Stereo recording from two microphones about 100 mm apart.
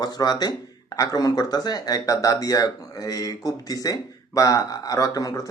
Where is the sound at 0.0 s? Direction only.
40° left (ahead or behind).